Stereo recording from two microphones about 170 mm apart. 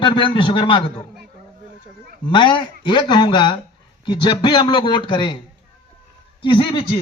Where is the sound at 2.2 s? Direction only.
30° left (ahead or behind).